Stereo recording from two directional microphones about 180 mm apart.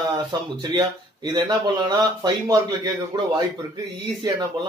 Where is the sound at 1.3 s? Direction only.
25° right (ahead or behind).